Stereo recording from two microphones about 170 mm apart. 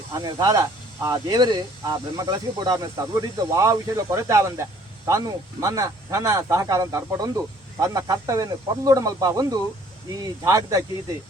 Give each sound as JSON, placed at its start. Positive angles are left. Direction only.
{"t": 0.1, "sound": "speech", "side_deg": -20}